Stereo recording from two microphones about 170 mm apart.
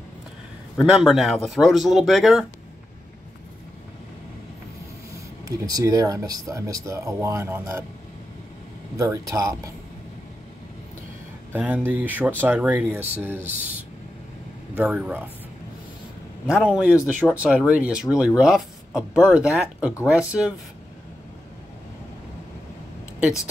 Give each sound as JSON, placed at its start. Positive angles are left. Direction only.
{"t": 0.7, "sound": "speech", "side_deg": 0}
{"t": 5.7, "sound": "speech", "side_deg": -25}
{"t": 8.9, "sound": "speech", "side_deg": -20}
{"t": 11.5, "sound": "speech", "side_deg": -10}
{"t": 14.8, "sound": "speech", "side_deg": -10}
{"t": 16.7, "sound": "speech", "side_deg": -10}